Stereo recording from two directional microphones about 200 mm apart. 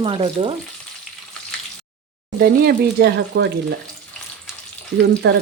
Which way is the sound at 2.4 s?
50° right (ahead or behind).